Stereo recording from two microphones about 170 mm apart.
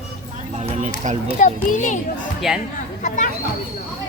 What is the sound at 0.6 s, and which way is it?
Speech, 40° right (ahead or behind).